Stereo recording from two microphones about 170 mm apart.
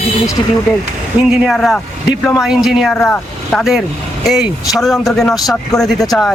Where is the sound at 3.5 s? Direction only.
Centre (ahead or behind).